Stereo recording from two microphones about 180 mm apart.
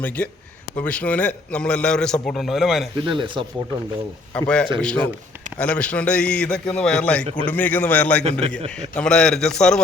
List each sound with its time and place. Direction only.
0.2 s a man's voice: 5° left (ahead or behind)
3.1 s speech: 25° right (ahead or behind)
4.4 s a man's voice: 5° left (ahead or behind)
8.2 s a man's voice: 35° right (ahead or behind)
9.0 s a man's voice: 5° left (ahead or behind)